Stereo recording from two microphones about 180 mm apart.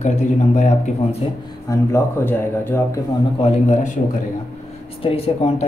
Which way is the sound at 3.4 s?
40° left (ahead or behind).